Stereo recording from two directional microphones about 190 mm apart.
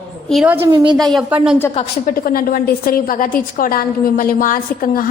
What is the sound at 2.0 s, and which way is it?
A woman's voice, 50° left (ahead or behind).